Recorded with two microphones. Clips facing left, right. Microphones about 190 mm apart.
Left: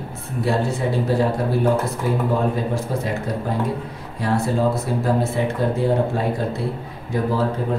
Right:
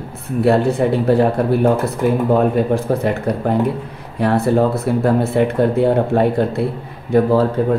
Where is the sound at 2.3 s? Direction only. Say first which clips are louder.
Right 7 dB; 60° right (ahead or behind).